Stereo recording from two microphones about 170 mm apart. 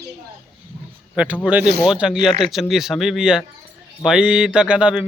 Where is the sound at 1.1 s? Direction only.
5° right (ahead or behind).